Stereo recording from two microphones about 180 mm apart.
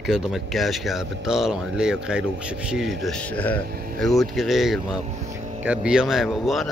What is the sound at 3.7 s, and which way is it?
Speech, 55° right (ahead or behind).